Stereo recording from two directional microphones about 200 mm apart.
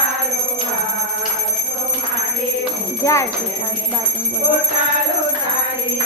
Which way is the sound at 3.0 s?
15° left (ahead or behind).